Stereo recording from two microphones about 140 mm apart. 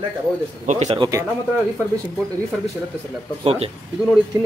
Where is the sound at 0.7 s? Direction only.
60° right (ahead or behind).